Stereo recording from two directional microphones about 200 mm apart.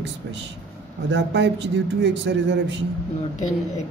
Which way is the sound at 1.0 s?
60° right (ahead or behind).